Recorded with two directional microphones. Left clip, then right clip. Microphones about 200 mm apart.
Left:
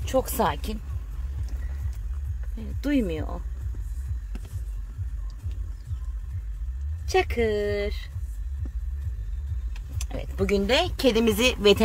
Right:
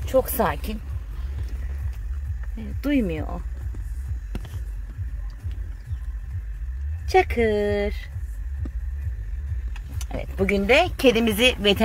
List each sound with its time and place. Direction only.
0.0 s speech: 5° left (ahead or behind)
2.5 s speech: 5° right (ahead or behind)
7.1 s speech: 15° right (ahead or behind)
10.0 s a woman's voice: 15° right (ahead or behind)
11.1 s speech: 5° left (ahead or behind)